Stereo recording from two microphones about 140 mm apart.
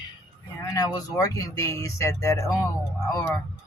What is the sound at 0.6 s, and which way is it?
Speech, 25° left (ahead or behind).